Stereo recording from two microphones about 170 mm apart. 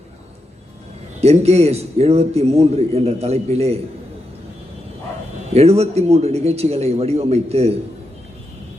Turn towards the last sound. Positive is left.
turn(degrees=-40)  # may be behind; listen again after turning